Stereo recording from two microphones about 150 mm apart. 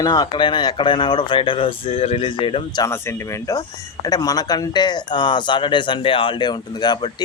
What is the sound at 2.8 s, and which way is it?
Speech, 20° left (ahead or behind).